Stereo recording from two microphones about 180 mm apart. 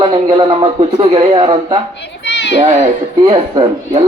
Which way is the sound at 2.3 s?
75° left (ahead or behind).